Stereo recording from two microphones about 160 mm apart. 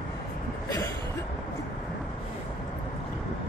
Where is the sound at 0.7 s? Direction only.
15° left (ahead or behind).